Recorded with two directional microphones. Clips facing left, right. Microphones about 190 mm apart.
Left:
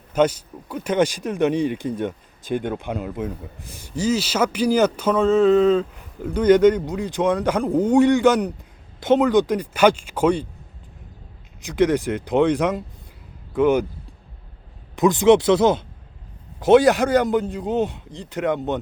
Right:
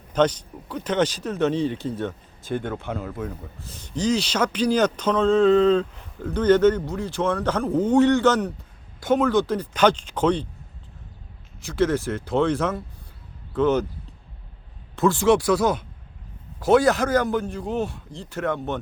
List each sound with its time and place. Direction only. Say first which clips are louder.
0.1 s speech: left 2 dB; 10° left (ahead or behind)
11.6 s speech: left 3 dB; 15° left (ahead or behind)
14.9 s speech: left 4 dB; 15° left (ahead or behind)